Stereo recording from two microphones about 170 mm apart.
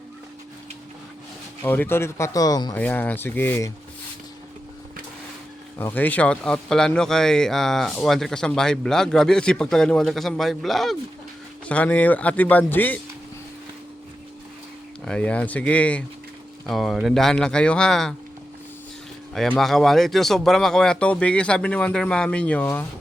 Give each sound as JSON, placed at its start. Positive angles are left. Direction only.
{"t": 1.6, "sound": "speech", "side_deg": 10}
{"t": 2.7, "sound": "speech", "side_deg": 10}
{"t": 5.8, "sound": "speech", "side_deg": 10}
{"t": 15.0, "sound": "speech", "side_deg": 5}
{"t": 19.3, "sound": "speech", "side_deg": 0}